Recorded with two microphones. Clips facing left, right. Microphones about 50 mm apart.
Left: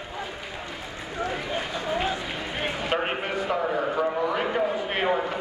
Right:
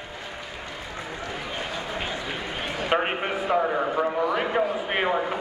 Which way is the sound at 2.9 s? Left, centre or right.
Centre.